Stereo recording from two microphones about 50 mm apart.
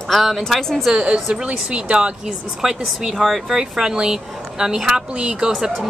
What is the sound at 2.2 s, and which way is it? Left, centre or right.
A woman's voice, centre.